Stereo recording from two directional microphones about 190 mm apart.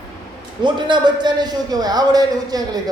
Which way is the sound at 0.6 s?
25° right (ahead or behind).